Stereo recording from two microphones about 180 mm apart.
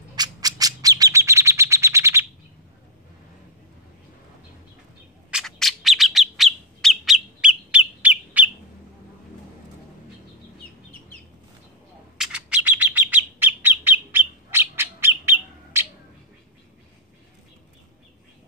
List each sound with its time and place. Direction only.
0.1 s bird: 20° right (ahead or behind)
5.3 s bird: centre (ahead or behind)
12.2 s bird: 5° right (ahead or behind)